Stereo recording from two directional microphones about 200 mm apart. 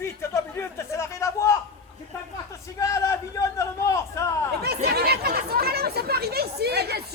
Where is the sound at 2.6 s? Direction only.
15° left (ahead or behind).